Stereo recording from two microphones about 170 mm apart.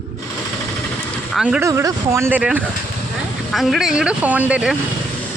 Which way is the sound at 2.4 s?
5° right (ahead or behind).